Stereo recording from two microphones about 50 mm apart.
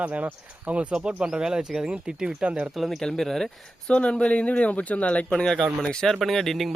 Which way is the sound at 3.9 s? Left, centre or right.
Left.